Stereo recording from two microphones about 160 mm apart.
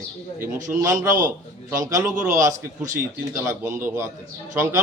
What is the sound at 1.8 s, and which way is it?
Speech, 20° right (ahead or behind).